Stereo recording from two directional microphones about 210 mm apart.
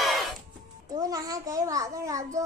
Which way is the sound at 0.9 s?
15° right (ahead or behind).